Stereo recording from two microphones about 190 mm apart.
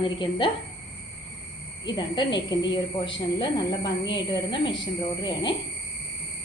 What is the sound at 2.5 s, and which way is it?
A woman's voice, 25° left (ahead or behind).